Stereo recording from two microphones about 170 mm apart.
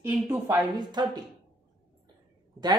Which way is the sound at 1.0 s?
25° right (ahead or behind).